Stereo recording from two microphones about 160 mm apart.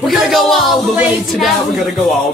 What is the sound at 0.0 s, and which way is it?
Speech, centre (ahead or behind).